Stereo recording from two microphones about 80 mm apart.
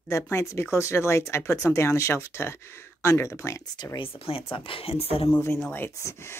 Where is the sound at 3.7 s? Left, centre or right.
Left.